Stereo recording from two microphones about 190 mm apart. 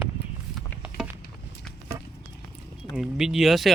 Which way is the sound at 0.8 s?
5° right (ahead or behind).